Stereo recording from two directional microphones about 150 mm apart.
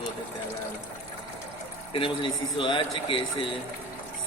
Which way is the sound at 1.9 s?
35° left (ahead or behind).